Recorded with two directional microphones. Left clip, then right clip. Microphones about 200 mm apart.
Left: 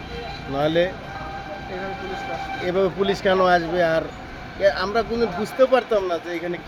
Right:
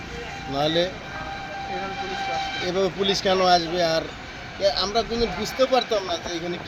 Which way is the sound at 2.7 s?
Centre (ahead or behind).